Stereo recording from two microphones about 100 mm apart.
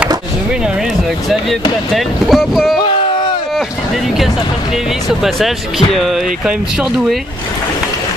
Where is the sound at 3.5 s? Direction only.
Centre (ahead or behind).